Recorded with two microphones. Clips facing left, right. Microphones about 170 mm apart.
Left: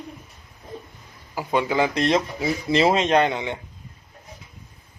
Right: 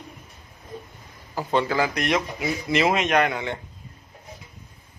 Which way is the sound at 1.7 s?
25° left (ahead or behind).